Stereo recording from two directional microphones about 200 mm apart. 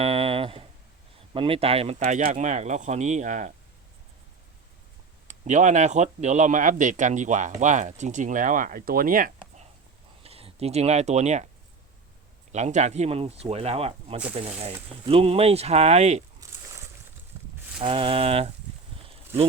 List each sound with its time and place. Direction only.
0.0 s a sound: 30° right (ahead or behind)
1.3 s speech: 25° right (ahead or behind)
5.3 s speech: 35° right (ahead or behind)
10.2 s speech: 30° right (ahead or behind)
12.5 s speech: 35° right (ahead or behind)
17.3 s cattle: 20° right (ahead or behind)
17.7 s speech: 25° right (ahead or behind)